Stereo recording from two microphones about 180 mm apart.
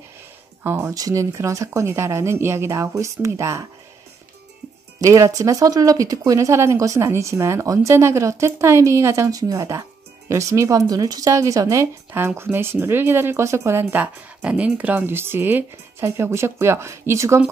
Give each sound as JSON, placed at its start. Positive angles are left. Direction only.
{"t": 0.7, "sound": "speech", "side_deg": -15}
{"t": 5.0, "sound": "speech", "side_deg": -20}